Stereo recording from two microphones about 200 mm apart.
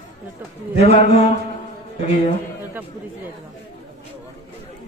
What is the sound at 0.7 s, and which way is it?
Speech, 30° left (ahead or behind).